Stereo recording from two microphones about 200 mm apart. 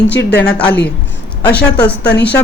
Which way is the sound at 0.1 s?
60° left (ahead or behind).